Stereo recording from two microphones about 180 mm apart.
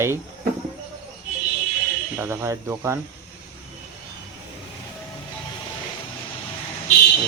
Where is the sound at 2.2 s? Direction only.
15° right (ahead or behind).